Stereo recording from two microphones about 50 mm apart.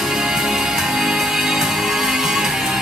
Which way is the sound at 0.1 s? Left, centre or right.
Centre.